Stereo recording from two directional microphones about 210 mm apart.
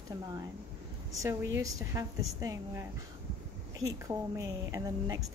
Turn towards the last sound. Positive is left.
turn(degrees=-15)  # may be behind; listen again after turning